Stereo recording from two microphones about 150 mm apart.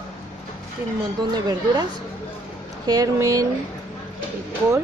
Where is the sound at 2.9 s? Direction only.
25° right (ahead or behind).